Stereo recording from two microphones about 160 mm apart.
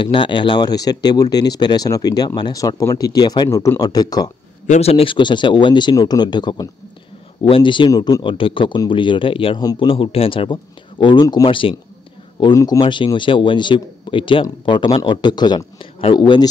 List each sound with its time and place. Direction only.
0.0 s speech: 30° left (ahead or behind)
4.6 s speech: 40° left (ahead or behind)